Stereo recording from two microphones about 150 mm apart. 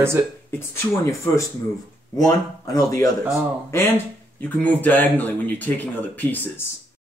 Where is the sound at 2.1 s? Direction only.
25° left (ahead or behind).